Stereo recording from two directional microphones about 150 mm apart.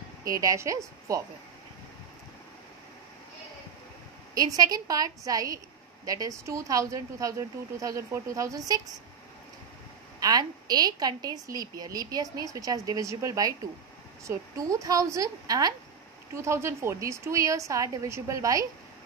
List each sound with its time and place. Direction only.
0.2 s speech: 20° right (ahead or behind)
4.4 s speech: 25° right (ahead or behind)
10.2 s speech: 25° right (ahead or behind)